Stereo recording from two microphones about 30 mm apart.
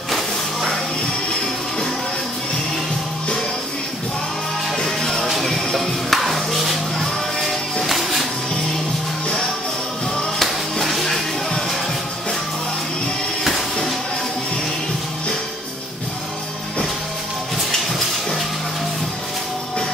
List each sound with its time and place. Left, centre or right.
4.7 s music: centre
10.4 s music: centre
17.6 s a sound: centre